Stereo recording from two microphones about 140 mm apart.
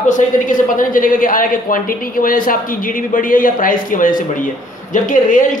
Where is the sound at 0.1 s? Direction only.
70° left (ahead or behind).